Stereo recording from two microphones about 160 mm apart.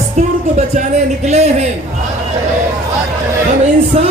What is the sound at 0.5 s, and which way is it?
Speech, 45° right (ahead or behind).